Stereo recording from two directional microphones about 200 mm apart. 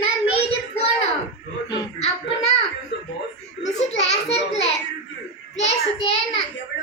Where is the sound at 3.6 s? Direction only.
30° left (ahead or behind).